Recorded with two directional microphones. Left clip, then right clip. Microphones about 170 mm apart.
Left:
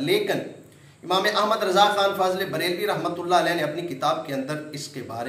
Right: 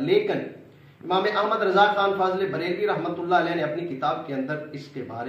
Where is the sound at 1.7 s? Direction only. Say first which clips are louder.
Even; 15° left (ahead or behind).